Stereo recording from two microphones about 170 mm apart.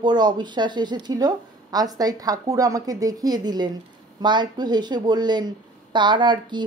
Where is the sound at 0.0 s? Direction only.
25° right (ahead or behind).